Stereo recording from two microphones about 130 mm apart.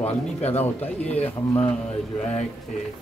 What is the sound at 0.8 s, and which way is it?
Speech, 10° left (ahead or behind).